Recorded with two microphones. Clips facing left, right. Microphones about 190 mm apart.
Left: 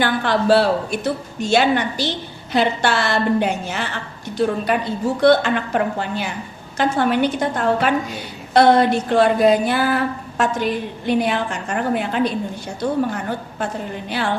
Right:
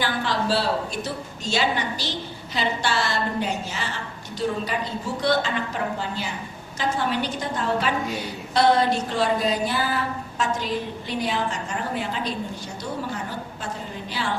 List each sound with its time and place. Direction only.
0.0 s a woman's voice: 60° left (ahead or behind)